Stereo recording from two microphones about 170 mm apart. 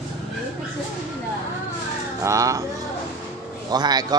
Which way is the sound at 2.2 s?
20° right (ahead or behind).